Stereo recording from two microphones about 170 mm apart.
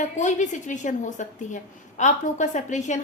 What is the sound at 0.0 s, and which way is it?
A woman's voice, 45° left (ahead or behind).